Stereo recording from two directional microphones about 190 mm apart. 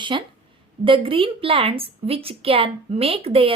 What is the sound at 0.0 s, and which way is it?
A woman's voice, 25° right (ahead or behind).